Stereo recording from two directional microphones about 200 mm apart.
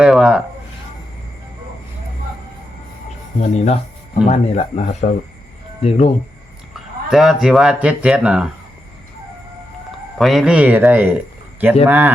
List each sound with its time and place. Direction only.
0.0 s a sound: 5° right (ahead or behind)
3.4 s speech: 35° left (ahead or behind)
6.7 s speech: centre (ahead or behind)
10.2 s a man's voice: centre (ahead or behind)